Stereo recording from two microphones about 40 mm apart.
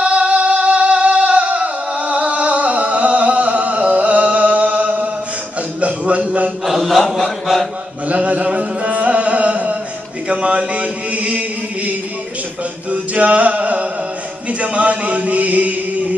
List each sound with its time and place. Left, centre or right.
0.0 s music: right
5.8 s a sound: right
6.6 s mantra: centre
7.2 s a sound: centre
8.1 s music: right
10.2 s chant: right
12.9 s music: right
14.6 s chant: right